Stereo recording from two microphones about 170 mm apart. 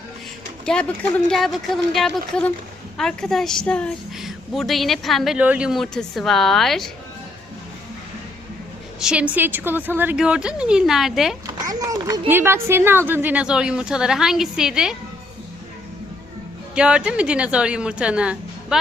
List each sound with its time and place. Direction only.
0.6 s a woman's voice: 5° left (ahead or behind)
9.0 s a woman's voice: 5° right (ahead or behind)
11.4 s a woman's voice: 20° right (ahead or behind); by 14.9 s 5° right (ahead or behind)
16.7 s a woman's voice: 5° right (ahead or behind)